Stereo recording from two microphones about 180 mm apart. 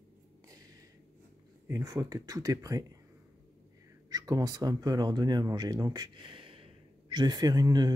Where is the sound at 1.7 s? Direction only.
20° right (ahead or behind).